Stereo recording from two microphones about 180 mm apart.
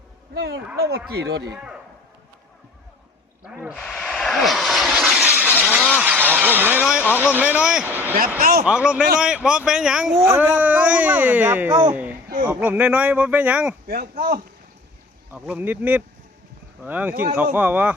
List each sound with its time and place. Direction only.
0.3 s speech: 70° right (ahead or behind)
3.4 s vehicle: 5° right (ahead or behind)
5.9 s a sound: 10° right (ahead or behind)
7.2 s speech: 10° right (ahead or behind)
13.8 s speech: 55° right (ahead or behind)
15.3 s speech: 10° right (ahead or behind)